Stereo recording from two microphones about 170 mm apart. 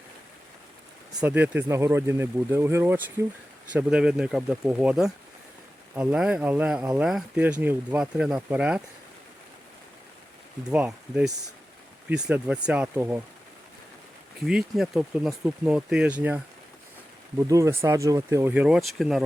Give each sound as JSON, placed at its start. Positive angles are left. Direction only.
{"t": 1.2, "sound": "speech", "side_deg": -10}
{"t": 10.7, "sound": "speech", "side_deg": -5}
{"t": 14.4, "sound": "speech", "side_deg": -5}
{"t": 17.4, "sound": "speech", "side_deg": -20}